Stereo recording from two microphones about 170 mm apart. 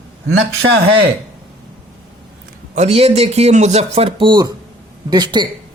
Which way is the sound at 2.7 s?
40° right (ahead or behind).